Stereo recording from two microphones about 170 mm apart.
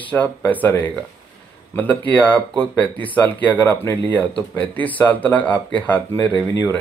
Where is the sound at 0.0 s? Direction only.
10° left (ahead or behind).